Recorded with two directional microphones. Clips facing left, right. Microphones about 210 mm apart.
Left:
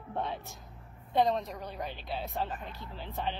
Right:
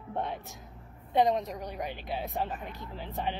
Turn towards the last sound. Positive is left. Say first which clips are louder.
# right 2 dB
turn(degrees=-15)  # may be behind; listen again after turning